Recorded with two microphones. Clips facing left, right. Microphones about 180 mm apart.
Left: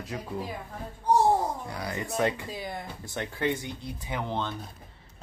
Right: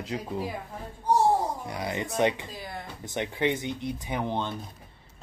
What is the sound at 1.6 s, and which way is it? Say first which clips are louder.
Speech: right 2 dB; 20° right (ahead or behind).